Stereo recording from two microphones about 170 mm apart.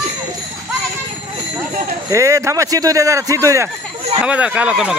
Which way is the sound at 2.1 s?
20° right (ahead or behind).